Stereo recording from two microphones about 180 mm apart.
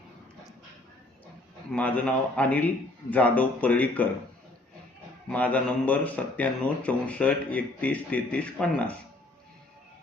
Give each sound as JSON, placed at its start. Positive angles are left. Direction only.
{"t": 1.7, "sound": "a man's voice", "side_deg": 10}
{"t": 5.3, "sound": "a man's voice", "side_deg": 10}